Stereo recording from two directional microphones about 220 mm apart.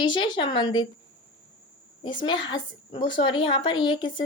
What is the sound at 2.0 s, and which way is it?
A woman's voice, 20° left (ahead or behind).